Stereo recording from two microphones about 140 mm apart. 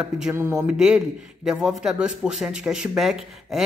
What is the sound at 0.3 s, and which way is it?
Speech, 15° right (ahead or behind).